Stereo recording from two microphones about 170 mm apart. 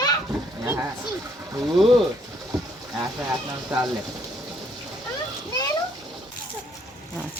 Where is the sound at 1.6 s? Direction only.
Centre (ahead or behind).